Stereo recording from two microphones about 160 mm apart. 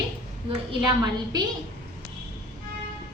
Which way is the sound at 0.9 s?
25° right (ahead or behind).